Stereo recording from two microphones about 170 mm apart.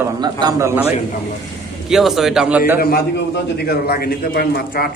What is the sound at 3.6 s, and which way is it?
A man's voice, 65° left (ahead or behind).